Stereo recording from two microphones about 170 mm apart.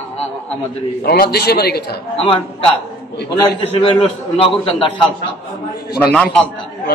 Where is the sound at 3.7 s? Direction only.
30° left (ahead or behind).